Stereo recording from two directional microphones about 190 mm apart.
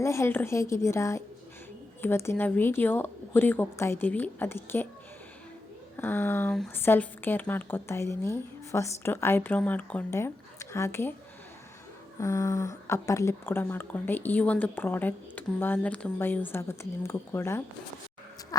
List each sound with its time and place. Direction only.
0.0 s speech: 15° left (ahead or behind)
6.0 s speech: 10° left (ahead or behind)
12.2 s speech: 15° left (ahead or behind)